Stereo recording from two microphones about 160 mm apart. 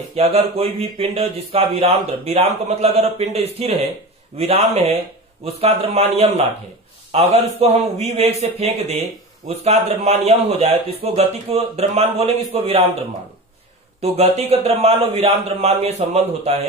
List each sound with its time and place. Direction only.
0.1 s speech: 40° right (ahead or behind)
14.1 s speech: 40° right (ahead or behind)